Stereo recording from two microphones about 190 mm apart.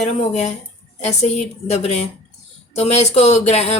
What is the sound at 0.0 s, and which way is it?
A woman's voice, 35° left (ahead or behind).